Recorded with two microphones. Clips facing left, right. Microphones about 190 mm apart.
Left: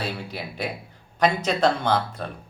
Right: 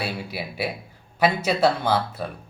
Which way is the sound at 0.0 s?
10° right (ahead or behind).